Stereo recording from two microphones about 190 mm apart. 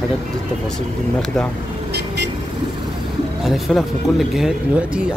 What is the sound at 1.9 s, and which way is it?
Vehicle, 60° right (ahead or behind).